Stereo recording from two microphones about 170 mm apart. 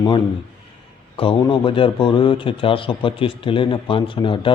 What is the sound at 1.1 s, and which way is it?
A man's voice, 30° left (ahead or behind).